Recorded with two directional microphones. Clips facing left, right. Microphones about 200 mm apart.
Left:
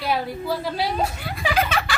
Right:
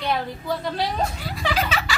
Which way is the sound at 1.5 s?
55° left (ahead or behind).